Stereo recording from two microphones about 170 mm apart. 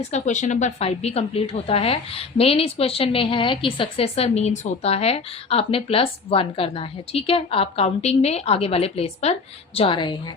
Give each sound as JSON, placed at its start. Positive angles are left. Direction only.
{"t": 0.1, "sound": "a woman's voice", "side_deg": 45}